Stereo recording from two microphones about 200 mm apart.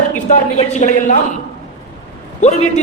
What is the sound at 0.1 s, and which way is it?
A man's voice, 35° left (ahead or behind).